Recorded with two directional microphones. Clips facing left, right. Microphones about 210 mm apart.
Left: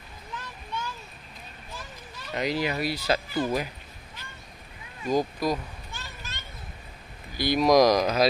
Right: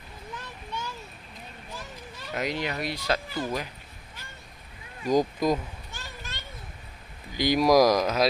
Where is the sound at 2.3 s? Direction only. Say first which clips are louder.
Left 3 dB; centre (ahead or behind).